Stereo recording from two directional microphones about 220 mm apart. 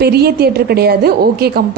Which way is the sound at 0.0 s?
45° right (ahead or behind).